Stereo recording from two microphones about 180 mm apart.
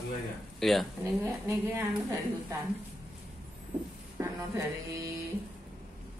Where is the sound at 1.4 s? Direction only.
15° right (ahead or behind).